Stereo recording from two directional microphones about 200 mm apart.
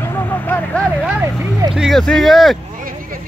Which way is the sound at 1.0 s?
10° right (ahead or behind).